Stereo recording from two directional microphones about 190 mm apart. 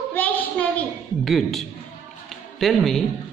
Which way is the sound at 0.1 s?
10° left (ahead or behind).